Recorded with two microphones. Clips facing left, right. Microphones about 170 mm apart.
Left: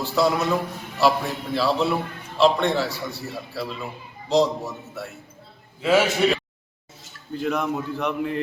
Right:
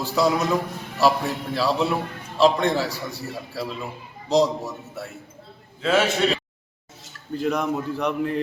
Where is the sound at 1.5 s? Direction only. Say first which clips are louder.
Left 1 dB; 10° right (ahead or behind).